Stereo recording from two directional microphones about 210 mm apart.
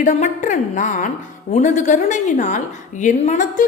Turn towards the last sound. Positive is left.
turn(degrees=35)  # may be behind; listen again after turning